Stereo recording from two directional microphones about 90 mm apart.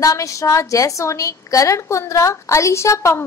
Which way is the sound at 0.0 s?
40° left (ahead or behind).